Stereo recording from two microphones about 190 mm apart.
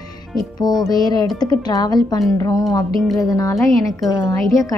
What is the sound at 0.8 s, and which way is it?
Speech, 20° left (ahead or behind).